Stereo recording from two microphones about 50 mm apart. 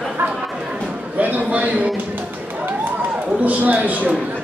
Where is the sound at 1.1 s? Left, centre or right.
Right.